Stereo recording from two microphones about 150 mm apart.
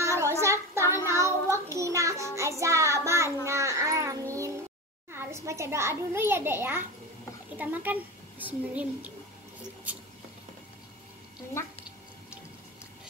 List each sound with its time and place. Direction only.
0.0 s child singing: 20° right (ahead or behind)
5.1 s a child's voice: 15° right (ahead or behind)